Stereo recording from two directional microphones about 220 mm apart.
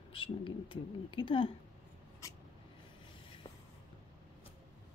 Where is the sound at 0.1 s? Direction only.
25° left (ahead or behind).